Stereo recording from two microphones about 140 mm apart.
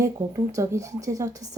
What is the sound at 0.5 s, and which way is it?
Speech, 20° right (ahead or behind).